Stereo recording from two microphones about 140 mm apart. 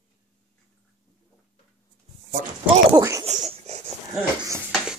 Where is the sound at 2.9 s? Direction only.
25° right (ahead or behind).